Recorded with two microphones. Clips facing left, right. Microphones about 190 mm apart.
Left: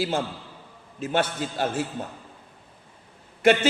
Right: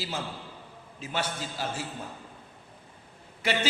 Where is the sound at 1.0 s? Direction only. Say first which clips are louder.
Left 8 dB; 55° left (ahead or behind).